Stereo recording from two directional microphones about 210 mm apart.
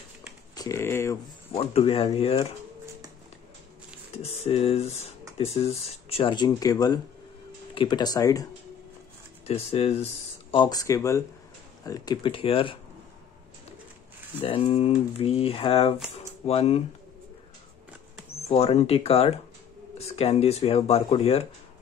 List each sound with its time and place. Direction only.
0.6 s speech: 15° left (ahead or behind)
1.5 s speech: 25° left (ahead or behind)
4.2 s speech: 30° left (ahead or behind)
9.5 s speech: 30° left (ahead or behind)
14.4 s speech: 25° left (ahead or behind)
18.5 s speech: 30° left (ahead or behind)